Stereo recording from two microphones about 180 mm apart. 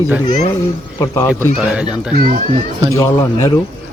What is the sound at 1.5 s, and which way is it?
Speech, 5° right (ahead or behind).